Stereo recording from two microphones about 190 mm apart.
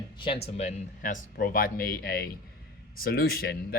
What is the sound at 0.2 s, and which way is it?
Speech, 30° left (ahead or behind).